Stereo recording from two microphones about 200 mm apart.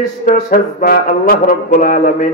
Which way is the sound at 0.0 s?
40° left (ahead or behind).